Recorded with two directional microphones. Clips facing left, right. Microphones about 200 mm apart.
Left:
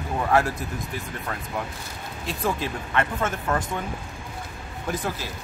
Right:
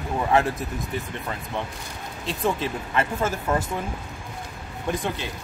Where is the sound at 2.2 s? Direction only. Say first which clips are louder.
Right 2 dB; centre (ahead or behind).